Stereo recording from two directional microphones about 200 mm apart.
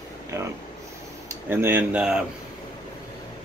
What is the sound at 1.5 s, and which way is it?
Speech, 10° right (ahead or behind).